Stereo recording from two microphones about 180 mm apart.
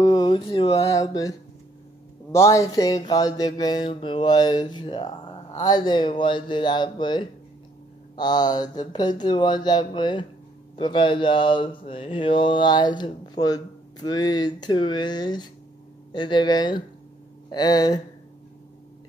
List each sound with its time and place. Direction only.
0.0 s speech: 20° left (ahead or behind)
0.7 s speech: 20° left (ahead or behind)
2.3 s speech: 15° left (ahead or behind)